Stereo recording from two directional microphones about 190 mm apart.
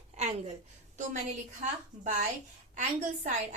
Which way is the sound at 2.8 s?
40° right (ahead or behind).